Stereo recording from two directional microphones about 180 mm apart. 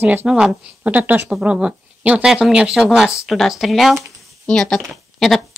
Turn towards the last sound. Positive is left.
turn(degrees=0)  # may be behind; listen again after turning